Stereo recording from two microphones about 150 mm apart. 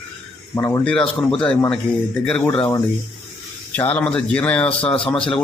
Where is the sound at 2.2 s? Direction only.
10° left (ahead or behind).